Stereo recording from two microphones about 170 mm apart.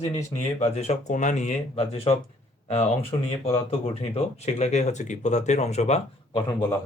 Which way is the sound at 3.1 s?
30° left (ahead or behind).